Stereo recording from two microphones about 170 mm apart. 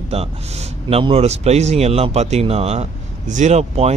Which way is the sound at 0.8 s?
35° right (ahead or behind).